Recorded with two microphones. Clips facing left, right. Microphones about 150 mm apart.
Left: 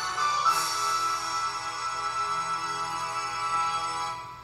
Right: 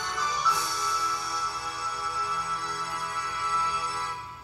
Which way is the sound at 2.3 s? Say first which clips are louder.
Even; 10° left (ahead or behind).